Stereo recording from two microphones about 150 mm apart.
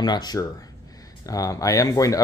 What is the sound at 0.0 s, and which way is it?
Speech, 25° left (ahead or behind).